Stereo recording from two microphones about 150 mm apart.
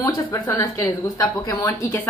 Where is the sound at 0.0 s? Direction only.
20° left (ahead or behind).